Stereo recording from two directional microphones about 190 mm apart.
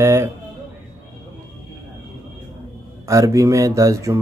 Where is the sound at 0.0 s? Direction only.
15° right (ahead or behind).